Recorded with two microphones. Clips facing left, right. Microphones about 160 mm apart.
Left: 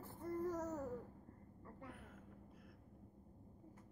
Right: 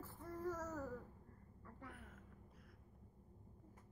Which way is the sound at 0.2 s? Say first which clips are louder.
Left 4 dB; 20° left (ahead or behind).